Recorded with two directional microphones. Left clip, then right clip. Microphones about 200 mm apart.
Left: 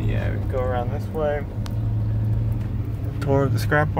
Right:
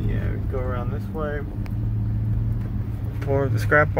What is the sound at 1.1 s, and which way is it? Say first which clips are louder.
Speech: left 6 dB; 20° left (ahead or behind).